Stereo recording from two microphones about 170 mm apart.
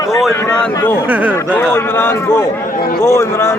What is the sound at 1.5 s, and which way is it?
A man's voice, 10° left (ahead or behind).